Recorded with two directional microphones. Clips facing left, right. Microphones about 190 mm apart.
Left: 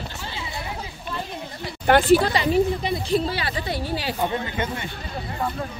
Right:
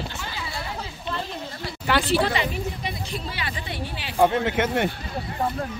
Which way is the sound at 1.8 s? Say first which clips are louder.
Left 6 dB; 50° left (ahead or behind).